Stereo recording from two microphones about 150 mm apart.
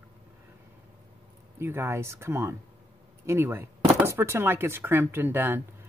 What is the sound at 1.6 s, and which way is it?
Speech, 15° right (ahead or behind).